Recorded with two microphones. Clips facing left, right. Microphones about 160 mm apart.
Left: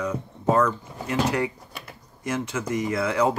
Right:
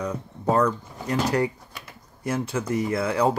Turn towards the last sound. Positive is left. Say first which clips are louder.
# even
turn(degrees=-30)  # may be behind; listen again after turning